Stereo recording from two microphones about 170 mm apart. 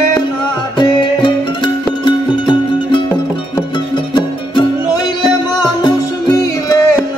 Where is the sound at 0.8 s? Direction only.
25° left (ahead or behind).